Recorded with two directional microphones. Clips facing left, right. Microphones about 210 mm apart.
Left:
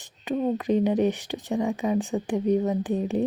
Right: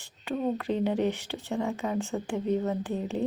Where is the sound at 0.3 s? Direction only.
15° left (ahead or behind).